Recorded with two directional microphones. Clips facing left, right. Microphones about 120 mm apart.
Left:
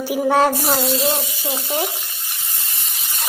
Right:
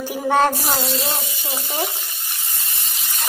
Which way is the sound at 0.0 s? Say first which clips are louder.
Left 2 dB; 5° left (ahead or behind).